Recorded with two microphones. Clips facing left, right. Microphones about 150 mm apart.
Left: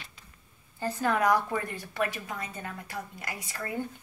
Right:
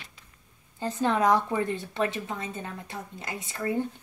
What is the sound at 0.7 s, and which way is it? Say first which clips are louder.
Speech: right 2 dB; 20° right (ahead or behind).